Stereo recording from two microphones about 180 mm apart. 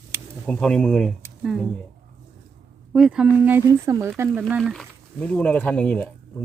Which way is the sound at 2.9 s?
5° right (ahead or behind).